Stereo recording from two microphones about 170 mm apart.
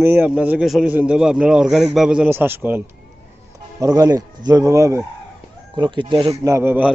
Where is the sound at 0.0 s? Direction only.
10° right (ahead or behind).